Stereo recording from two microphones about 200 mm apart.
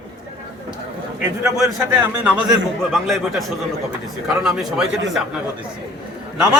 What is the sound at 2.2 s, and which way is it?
A man's voice, 5° right (ahead or behind).